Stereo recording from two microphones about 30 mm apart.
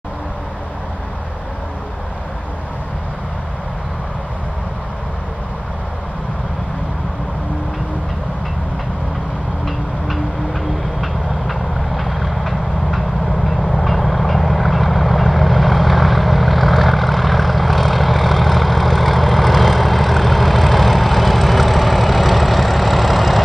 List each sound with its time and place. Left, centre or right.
9.7 s vehicle: centre